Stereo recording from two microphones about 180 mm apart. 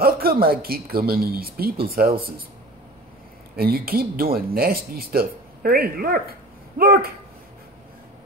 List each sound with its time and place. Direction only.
0.0 s speech: 55° right (ahead or behind)
3.5 s speech: 55° right (ahead or behind)